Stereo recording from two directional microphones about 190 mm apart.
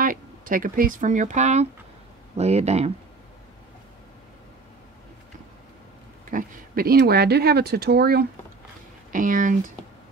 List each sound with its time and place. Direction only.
0.0 s speech: 45° right (ahead or behind)
6.3 s speech: 50° right (ahead or behind)
9.1 s speech: 45° right (ahead or behind)